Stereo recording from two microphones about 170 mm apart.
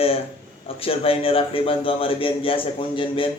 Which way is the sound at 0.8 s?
35° left (ahead or behind).